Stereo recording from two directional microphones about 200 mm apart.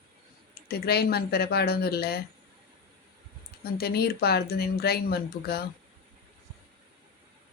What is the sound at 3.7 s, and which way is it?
Speech, 50° left (ahead or behind).